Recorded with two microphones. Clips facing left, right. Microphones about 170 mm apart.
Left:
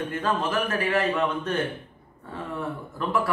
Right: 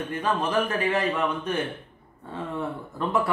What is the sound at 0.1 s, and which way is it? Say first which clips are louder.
Speech: right 3 dB; 15° right (ahead or behind).